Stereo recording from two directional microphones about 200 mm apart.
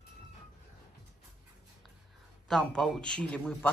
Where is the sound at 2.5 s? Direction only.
Centre (ahead or behind).